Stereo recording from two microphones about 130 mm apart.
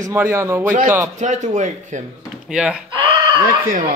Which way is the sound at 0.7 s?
85° right.